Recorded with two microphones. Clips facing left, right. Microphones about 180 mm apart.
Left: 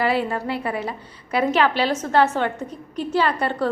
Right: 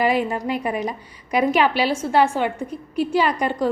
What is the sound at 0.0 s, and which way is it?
A woman's voice, 15° right (ahead or behind).